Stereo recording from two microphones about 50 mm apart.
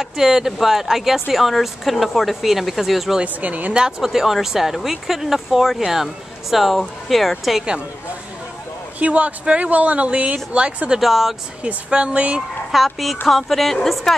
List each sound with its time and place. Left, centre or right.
0.0 s speech: centre
3.3 s speech: right
3.7 s speech: centre
9.0 s speech: right
11.0 s speech: centre
11.6 s speech: right
12.4 s speech: centre